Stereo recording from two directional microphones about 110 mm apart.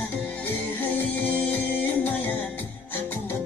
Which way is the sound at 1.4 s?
15° left (ahead or behind).